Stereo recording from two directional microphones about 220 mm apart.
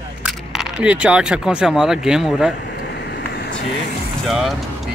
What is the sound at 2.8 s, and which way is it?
Vehicle, 50° left (ahead or behind).